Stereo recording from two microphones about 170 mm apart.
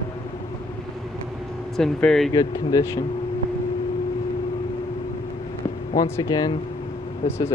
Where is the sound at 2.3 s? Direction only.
20° left (ahead or behind).